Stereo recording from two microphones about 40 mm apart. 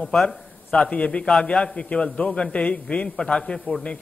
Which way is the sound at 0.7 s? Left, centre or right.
Left.